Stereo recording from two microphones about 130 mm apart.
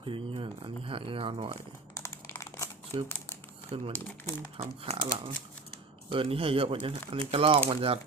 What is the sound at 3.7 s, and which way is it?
Speech, 45° right (ahead or behind).